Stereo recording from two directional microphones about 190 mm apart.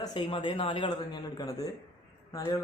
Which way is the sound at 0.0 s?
25° left (ahead or behind).